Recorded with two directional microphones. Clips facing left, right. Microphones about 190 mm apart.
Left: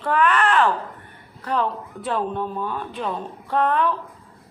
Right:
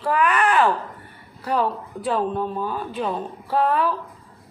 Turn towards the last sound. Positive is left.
turn(degrees=-5)  # may be behind; listen again after turning